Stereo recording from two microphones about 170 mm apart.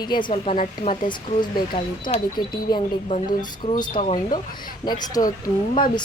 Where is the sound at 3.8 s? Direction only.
35° left (ahead or behind).